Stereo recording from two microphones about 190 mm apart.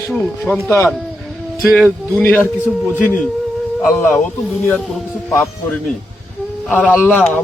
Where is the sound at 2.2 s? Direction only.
10° left (ahead or behind).